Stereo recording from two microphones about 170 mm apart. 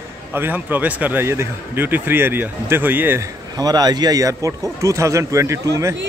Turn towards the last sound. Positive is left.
turn(degrees=-15)  # may be behind; listen again after turning